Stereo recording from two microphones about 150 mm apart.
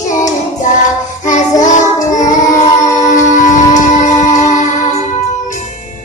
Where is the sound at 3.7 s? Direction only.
55° left (ahead or behind).